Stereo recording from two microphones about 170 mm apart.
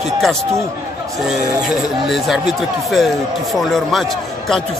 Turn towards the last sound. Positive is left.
turn(degrees=0)  # may be behind; listen again after turning